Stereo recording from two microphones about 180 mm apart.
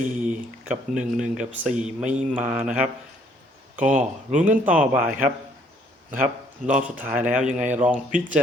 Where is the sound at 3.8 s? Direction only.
45° right (ahead or behind).